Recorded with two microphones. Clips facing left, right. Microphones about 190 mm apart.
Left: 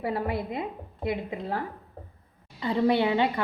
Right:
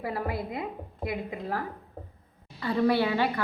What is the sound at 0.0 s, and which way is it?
A woman's voice, 25° left (ahead or behind).